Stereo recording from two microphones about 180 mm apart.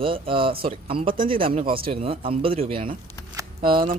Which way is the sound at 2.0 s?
30° right (ahead or behind).